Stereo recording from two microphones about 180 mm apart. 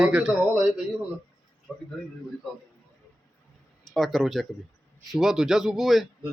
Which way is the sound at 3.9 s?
Centre (ahead or behind).